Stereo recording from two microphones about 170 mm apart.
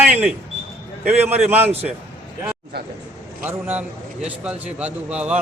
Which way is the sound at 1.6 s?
40° right (ahead or behind).